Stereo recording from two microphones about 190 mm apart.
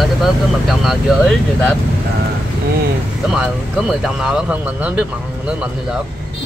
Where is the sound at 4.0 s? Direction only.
5° right (ahead or behind).